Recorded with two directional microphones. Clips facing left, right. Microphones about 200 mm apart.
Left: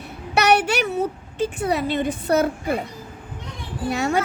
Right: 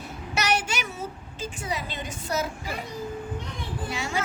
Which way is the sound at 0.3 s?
60° left (ahead or behind).